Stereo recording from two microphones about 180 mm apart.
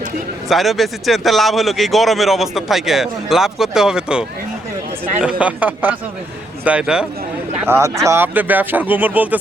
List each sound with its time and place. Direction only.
0.4 s speech: centre (ahead or behind)